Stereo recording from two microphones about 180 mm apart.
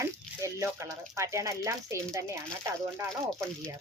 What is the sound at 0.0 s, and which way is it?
Speech, 15° right (ahead or behind).